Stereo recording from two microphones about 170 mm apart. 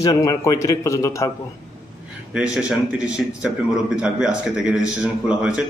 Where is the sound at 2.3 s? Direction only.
5° right (ahead or behind).